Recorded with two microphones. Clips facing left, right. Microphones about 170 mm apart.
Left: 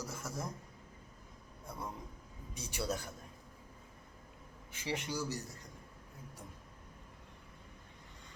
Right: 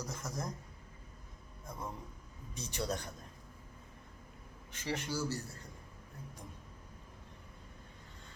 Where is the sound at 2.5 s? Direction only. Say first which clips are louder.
Even; 10° left (ahead or behind).